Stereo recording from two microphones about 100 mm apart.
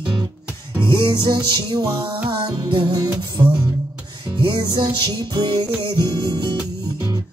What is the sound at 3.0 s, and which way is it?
Music, 40° right (ahead or behind).